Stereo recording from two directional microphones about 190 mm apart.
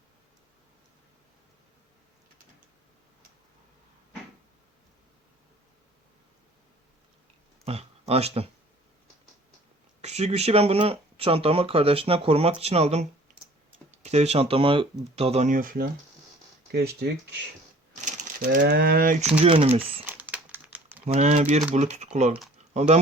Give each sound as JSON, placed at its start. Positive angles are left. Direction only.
{"t": 7.6, "sound": "speech", "side_deg": -35}
{"t": 10.0, "sound": "speech", "side_deg": -35}
{"t": 16.7, "sound": "speech", "side_deg": -60}
{"t": 18.0, "sound": "speech", "side_deg": -40}
{"t": 19.4, "sound": "speech", "side_deg": -30}
{"t": 20.1, "sound": "crumpling", "side_deg": -10}
{"t": 21.0, "sound": "speech", "side_deg": -35}